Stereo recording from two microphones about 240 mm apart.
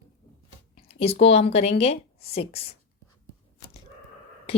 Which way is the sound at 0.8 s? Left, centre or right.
Left.